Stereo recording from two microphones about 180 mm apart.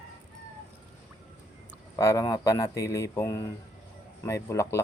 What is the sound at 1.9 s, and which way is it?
Speech, 15° left (ahead or behind).